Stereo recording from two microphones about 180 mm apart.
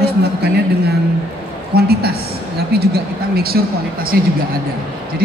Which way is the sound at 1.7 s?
60° right (ahead or behind).